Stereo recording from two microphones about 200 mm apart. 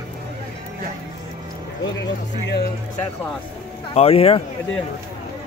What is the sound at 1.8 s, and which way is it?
Speech, 60° left (ahead or behind).